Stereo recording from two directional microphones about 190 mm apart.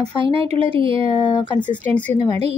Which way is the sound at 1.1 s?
25° left (ahead or behind).